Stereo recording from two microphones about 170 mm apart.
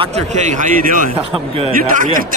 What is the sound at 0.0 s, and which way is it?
Speech, 40° right (ahead or behind).